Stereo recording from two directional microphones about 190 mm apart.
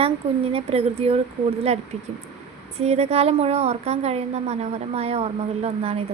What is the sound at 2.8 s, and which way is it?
A woman's voice, 35° right (ahead or behind).